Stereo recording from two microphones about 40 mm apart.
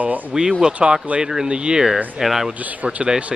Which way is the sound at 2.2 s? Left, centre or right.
Centre.